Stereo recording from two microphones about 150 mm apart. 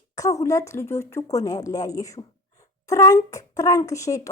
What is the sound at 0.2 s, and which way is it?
Speech, 20° left (ahead or behind).